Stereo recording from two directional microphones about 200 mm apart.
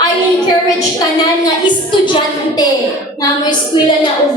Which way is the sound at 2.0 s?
25° left (ahead or behind).